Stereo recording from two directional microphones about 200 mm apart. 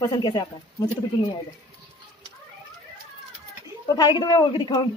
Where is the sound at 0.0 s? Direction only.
20° left (ahead or behind).